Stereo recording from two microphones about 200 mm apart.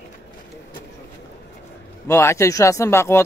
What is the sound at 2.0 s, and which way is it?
Speech, 15° left (ahead or behind).